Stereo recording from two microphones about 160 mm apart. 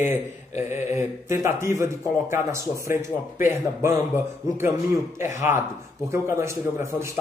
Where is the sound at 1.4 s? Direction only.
15° right (ahead or behind).